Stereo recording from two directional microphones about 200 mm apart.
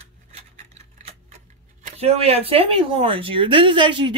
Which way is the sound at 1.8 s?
30° right (ahead or behind).